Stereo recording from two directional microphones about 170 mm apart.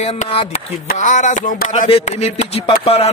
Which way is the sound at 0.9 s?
45° left (ahead or behind).